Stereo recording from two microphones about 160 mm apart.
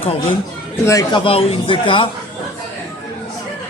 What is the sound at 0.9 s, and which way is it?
Speech, 20° left (ahead or behind).